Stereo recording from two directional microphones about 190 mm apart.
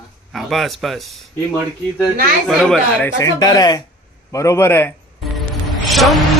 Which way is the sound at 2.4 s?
Centre (ahead or behind).